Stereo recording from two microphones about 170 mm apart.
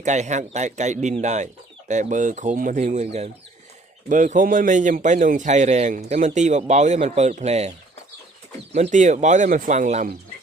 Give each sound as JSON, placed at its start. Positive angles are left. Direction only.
{"t": 0.0, "sound": "a man's voice", "side_deg": -45}
{"t": 8.7, "sound": "a man's voice", "side_deg": -45}